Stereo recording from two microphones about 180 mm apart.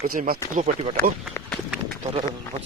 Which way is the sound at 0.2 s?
45° right (ahead or behind).